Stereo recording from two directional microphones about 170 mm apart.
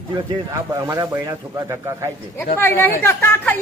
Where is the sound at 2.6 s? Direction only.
15° left (ahead or behind).